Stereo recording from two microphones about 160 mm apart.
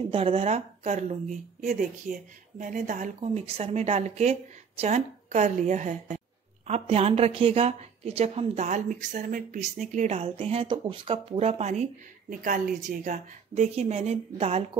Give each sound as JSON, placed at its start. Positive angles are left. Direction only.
{"t": 0.1, "sound": "speech", "side_deg": -35}
{"t": 3.2, "sound": "a woman's voice", "side_deg": -40}